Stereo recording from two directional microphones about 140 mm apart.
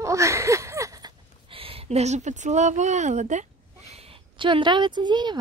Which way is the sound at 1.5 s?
40° right (ahead or behind).